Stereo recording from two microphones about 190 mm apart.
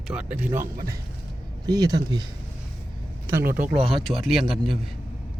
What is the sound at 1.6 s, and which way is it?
Speech, 20° right (ahead or behind).